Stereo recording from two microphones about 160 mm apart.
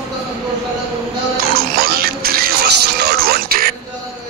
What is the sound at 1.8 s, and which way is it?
Music, 70° right (ahead or behind).